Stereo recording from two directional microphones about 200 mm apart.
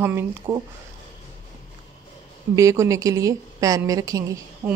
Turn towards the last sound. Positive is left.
turn(degrees=-15)  # may be behind; listen again after turning